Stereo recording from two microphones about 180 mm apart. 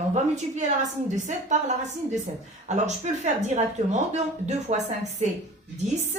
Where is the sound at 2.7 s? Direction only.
40° right (ahead or behind).